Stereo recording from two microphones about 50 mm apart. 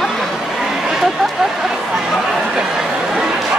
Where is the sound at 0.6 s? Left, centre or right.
Centre.